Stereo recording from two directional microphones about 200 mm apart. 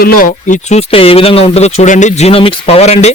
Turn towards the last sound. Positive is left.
turn(degrees=30)  # may be behind; listen again after turning